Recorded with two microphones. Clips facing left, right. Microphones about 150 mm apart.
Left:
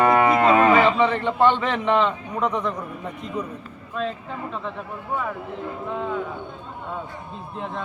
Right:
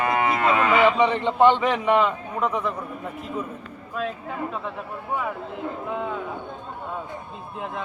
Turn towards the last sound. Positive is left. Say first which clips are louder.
# left 1 dB
turn(degrees=-5)  # may be behind; listen again after turning